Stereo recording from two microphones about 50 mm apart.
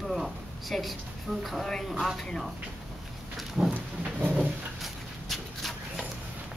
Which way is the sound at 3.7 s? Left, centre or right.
Right.